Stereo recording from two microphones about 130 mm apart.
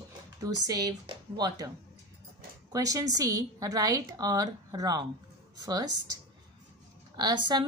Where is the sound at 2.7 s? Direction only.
25° right (ahead or behind).